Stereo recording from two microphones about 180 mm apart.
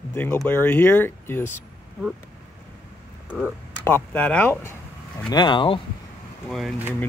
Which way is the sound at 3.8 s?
10° left (ahead or behind).